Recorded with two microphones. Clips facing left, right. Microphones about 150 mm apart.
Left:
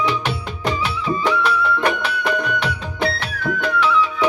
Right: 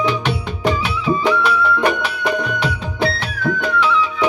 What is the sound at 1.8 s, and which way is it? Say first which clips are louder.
Music: right 2 dB; 15° right (ahead or behind).